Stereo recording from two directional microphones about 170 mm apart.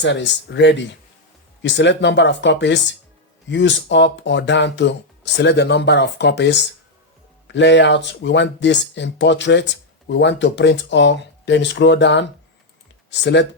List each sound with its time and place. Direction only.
0.0 s speech: 90° left